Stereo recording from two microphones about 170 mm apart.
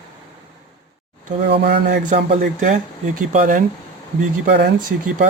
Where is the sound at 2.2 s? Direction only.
45° right (ahead or behind).